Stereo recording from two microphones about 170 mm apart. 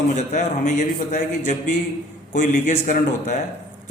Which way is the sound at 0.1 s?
45° left (ahead or behind).